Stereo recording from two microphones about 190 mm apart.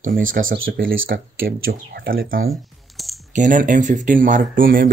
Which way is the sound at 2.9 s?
Centre (ahead or behind).